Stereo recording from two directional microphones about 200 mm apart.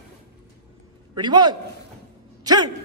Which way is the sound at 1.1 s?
20° right (ahead or behind).